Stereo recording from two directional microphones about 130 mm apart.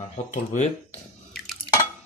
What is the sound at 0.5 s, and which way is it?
Speech, 65° left (ahead or behind).